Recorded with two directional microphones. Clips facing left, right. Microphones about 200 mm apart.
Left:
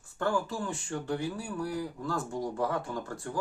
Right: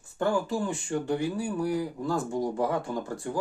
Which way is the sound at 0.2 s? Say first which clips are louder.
Right 4 dB; 15° right (ahead or behind).